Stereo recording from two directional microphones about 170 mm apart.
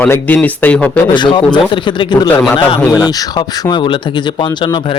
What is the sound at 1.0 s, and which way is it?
Speech, 25° left (ahead or behind).